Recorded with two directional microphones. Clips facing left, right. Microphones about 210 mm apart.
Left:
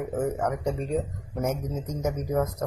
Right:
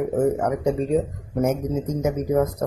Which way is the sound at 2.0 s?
10° right (ahead or behind).